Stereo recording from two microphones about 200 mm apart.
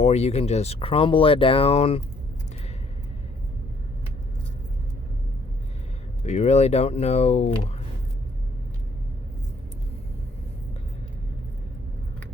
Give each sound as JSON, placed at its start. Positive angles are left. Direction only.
{"t": 0.0, "sound": "speech", "side_deg": 30}
{"t": 6.2, "sound": "speech", "side_deg": 35}